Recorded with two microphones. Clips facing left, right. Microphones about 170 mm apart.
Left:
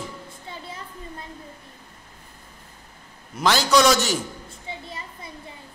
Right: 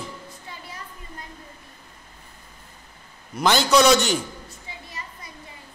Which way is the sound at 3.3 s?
Centre (ahead or behind).